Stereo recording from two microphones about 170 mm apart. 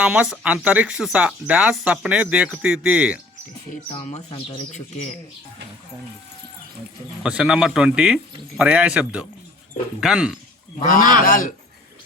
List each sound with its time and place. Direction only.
0.0 s speech: 5° right (ahead or behind)
3.8 s speech: 40° left (ahead or behind)
7.2 s speech: 5° right (ahead or behind)
10.8 s speech: 55° left (ahead or behind)